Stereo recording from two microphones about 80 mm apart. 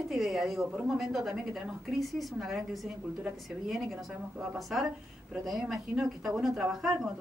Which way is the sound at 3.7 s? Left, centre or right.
Centre.